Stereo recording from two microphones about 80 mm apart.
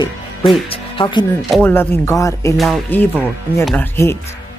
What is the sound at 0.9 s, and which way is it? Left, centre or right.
Speech, left.